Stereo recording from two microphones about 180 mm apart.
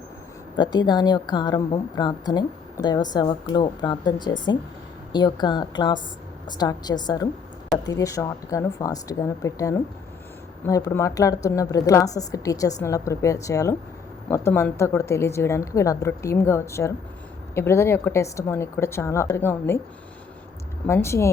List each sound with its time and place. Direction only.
0.5 s a woman's voice: 25° left (ahead or behind)
20.8 s a woman's voice: 15° left (ahead or behind)